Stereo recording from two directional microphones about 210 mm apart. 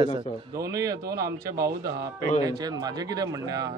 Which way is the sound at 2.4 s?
20° right (ahead or behind).